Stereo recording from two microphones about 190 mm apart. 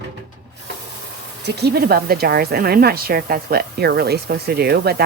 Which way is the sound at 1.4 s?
60° right (ahead or behind).